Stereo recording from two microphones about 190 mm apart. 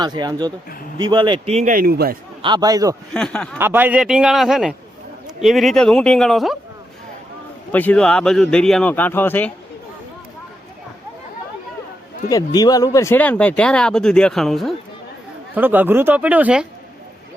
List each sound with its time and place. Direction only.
0.0 s speech: 20° right (ahead or behind); by 2.1 s 50° right (ahead or behind)
2.4 s speech: 25° right (ahead or behind)
3.1 s speech: 5° left (ahead or behind)
3.6 s speech: 10° right (ahead or behind)
7.7 s speech: 10° left (ahead or behind)
12.3 s speech: 20° left (ahead or behind); by 16.6 s 5° right (ahead or behind)